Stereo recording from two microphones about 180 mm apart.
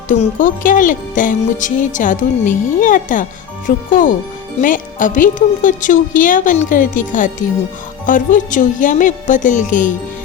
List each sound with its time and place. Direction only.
0.1 s speech: 45° left (ahead or behind)